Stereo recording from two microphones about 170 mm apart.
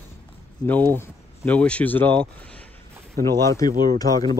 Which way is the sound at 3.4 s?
20° left (ahead or behind).